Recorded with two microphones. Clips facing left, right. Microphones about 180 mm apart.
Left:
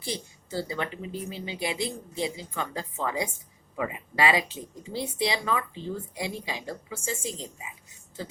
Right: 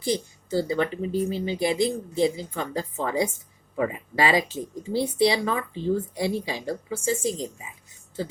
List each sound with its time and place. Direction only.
0.0 s speech: 40° right (ahead or behind)